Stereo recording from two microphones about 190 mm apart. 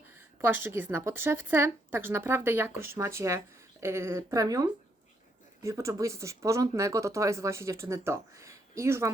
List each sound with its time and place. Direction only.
0.4 s speech: 10° right (ahead or behind)